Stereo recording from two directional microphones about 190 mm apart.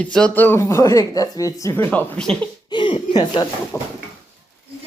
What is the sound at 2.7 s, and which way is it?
Chuckle, 25° left (ahead or behind).